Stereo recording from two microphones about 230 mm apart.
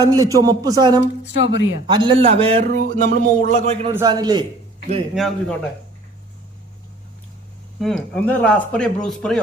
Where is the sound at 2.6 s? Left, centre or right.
Right.